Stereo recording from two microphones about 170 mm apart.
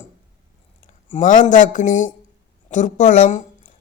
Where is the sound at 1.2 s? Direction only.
50° left (ahead or behind).